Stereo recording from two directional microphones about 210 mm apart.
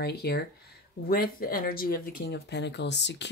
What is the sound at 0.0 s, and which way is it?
Speech, 50° left (ahead or behind).